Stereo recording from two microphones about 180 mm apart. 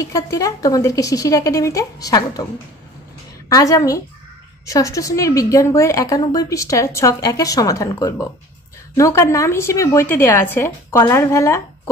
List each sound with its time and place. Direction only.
0.0 s a woman's voice: 20° left (ahead or behind)
3.4 s a woman's voice: 20° left (ahead or behind)